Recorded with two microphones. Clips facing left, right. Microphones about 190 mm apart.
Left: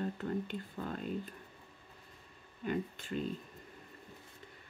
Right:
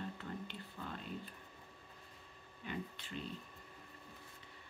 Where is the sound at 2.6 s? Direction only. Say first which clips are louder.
Left 8 dB; 45° left (ahead or behind).